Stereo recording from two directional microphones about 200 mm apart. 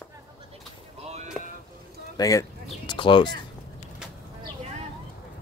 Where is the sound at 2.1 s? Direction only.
15° left (ahead or behind).